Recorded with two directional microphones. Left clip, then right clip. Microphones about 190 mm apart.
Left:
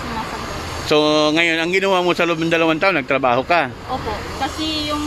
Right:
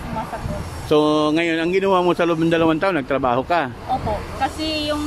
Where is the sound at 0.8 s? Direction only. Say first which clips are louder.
Left 2 dB; 10° right (ahead or behind).